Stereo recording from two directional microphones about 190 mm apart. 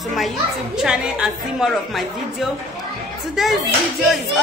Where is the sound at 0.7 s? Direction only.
5° right (ahead or behind).